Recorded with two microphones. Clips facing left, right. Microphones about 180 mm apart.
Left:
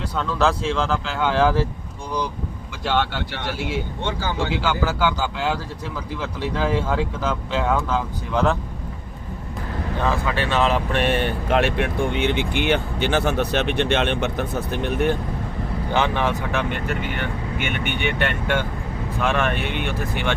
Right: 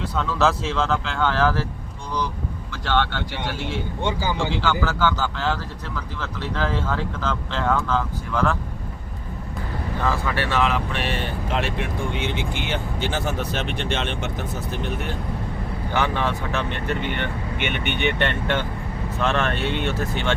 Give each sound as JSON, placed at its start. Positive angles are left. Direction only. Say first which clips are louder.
{"t": 0.2, "sound": "speech", "louder": "left 1 dB", "side_deg": 0}
{"t": 1.3, "sound": "speech", "louder": "left 4 dB", "side_deg": 15}
{"t": 2.8, "sound": "speech", "louder": "left 1 dB", "side_deg": 10}
{"t": 10.1, "sound": "speech", "louder": "left 1 dB", "side_deg": 20}
{"t": 10.9, "sound": "speech", "louder": "left 6 dB", "side_deg": 55}
{"t": 15.9, "sound": "speech", "louder": "left 2 dB", "side_deg": 20}